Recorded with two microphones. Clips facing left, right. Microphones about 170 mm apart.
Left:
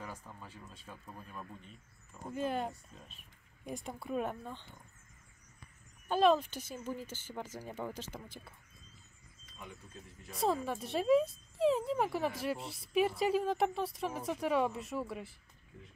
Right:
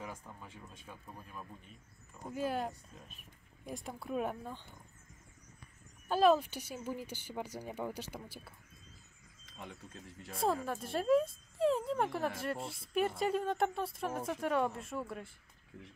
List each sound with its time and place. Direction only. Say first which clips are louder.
0.0 s speech: even; 15° right (ahead or behind)
1.0 s speech: left 2 dB; centre (ahead or behind)
6.0 s speech: even; 5° right (ahead or behind)
9.6 s speech: right 2 dB; 70° right (ahead or behind)
10.3 s speech: left 1 dB; centre (ahead or behind)